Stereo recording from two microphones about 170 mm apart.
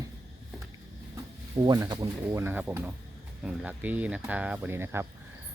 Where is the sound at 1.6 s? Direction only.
25° right (ahead or behind).